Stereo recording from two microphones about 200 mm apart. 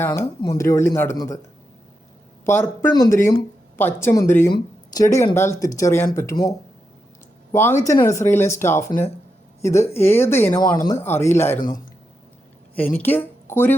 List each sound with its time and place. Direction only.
0.0 s speech: 15° left (ahead or behind)
2.5 s speech: 10° left (ahead or behind)
7.5 s speech: 10° left (ahead or behind)
8.9 s speech: 45° left (ahead or behind)
9.6 s speech: 15° left (ahead or behind)
12.7 s speech: 10° left (ahead or behind)